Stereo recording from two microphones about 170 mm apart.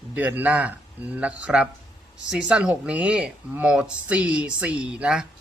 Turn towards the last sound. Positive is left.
turn(degrees=-5)  # may be behind; listen again after turning